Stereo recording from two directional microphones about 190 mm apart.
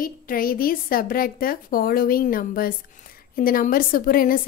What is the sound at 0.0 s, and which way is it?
A woman's voice, 50° left (ahead or behind).